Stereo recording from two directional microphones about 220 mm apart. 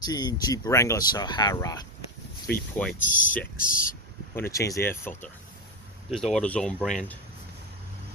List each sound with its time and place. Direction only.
0.0 s speech: 15° left (ahead or behind)
2.5 s speech: 5° left (ahead or behind)
3.0 s speech: 35° left (ahead or behind)
4.4 s speech: 15° left (ahead or behind)
6.3 s speech: 5° left (ahead or behind)